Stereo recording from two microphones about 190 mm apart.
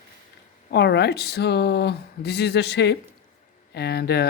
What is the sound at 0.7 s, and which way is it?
Speech, 60° left (ahead or behind).